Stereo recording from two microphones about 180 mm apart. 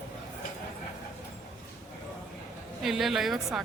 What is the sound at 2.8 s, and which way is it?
Speech, centre (ahead or behind).